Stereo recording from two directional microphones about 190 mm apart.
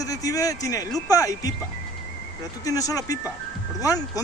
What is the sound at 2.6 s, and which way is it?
Speech, 20° left (ahead or behind).